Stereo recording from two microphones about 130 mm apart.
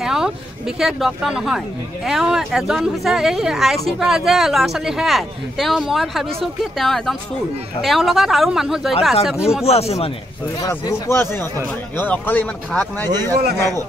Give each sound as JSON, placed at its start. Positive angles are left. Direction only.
{"t": 0.0, "sound": "speech", "side_deg": -5}
{"t": 9.7, "sound": "speech", "side_deg": 50}
{"t": 10.7, "sound": "speech", "side_deg": 20}